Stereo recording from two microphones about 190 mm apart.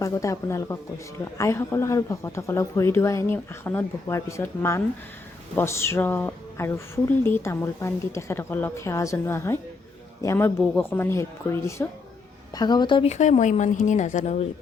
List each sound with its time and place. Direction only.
0.0 s a woman's voice: 15° left (ahead or behind); by 14.4 s 40° left (ahead or behind)